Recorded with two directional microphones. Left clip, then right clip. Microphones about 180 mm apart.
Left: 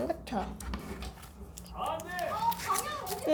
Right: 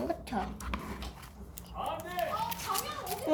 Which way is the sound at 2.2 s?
20° right (ahead or behind).